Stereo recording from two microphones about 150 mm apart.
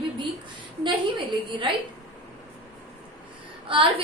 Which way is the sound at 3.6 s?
35° right (ahead or behind).